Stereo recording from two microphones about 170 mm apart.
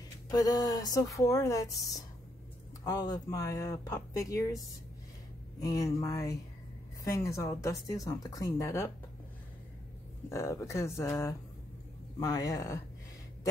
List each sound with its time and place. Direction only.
0.3 s speech: 20° left (ahead or behind)
5.6 s speech: 20° left (ahead or behind)
10.3 s speech: 15° left (ahead or behind)